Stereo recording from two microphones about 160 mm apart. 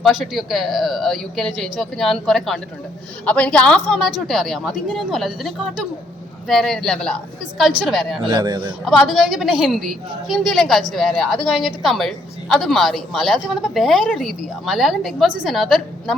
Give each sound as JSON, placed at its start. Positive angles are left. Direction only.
{"t": 0.0, "sound": "a woman's voice", "side_deg": 0}
{"t": 8.2, "sound": "a man's voice", "side_deg": -25}
{"t": 8.8, "sound": "a woman's voice", "side_deg": 0}